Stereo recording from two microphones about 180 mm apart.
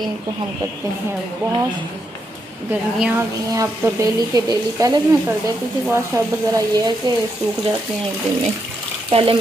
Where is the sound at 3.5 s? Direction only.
20° right (ahead or behind).